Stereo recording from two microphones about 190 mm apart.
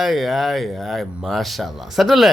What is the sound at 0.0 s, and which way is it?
Speech, centre (ahead or behind).